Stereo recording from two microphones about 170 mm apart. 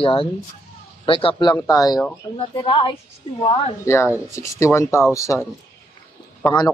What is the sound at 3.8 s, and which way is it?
A man's voice, 15° left (ahead or behind).